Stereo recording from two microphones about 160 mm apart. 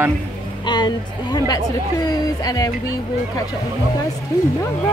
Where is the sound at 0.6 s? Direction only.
25° left (ahead or behind).